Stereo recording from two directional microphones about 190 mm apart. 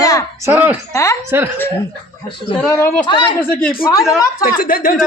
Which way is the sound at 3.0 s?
25° left (ahead or behind).